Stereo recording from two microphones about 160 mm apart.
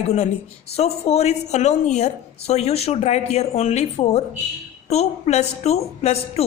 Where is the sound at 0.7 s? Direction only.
40° left (ahead or behind).